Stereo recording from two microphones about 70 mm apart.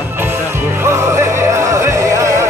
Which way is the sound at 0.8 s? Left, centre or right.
Right.